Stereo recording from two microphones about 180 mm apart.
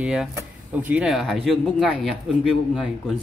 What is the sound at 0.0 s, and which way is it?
A man's voice, 5° right (ahead or behind).